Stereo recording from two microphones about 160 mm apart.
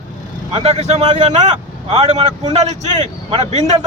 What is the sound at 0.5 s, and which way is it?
Speech, 40° right (ahead or behind).